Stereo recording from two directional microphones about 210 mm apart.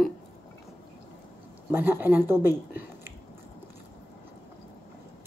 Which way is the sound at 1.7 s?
10° right (ahead or behind).